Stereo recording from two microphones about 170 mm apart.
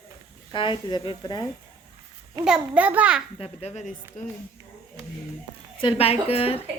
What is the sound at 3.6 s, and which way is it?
Speech, 45° left (ahead or behind).